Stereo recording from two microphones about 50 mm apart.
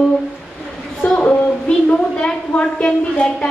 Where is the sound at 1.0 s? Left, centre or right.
Left.